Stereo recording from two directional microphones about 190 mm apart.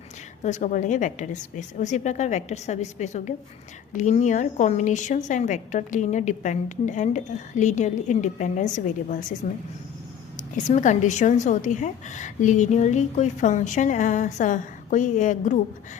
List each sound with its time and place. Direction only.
0.4 s a woman's voice: 40° left (ahead or behind)